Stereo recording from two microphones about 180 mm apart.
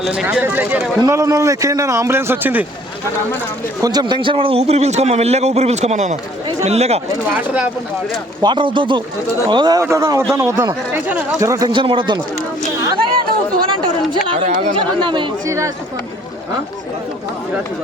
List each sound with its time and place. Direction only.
0.0 s a man's voice: 5° right (ahead or behind)
3.8 s a man's voice: 20° right (ahead or behind); by 7.0 s 35° right (ahead or behind)
7.3 s a man's voice: 5° right (ahead or behind)
8.4 s a man's voice: 25° right (ahead or behind)
13.7 s chatter: 25° right (ahead or behind)
14.4 s a man's voice: 40° right (ahead or behind)
14.8 s speech: 25° right (ahead or behind)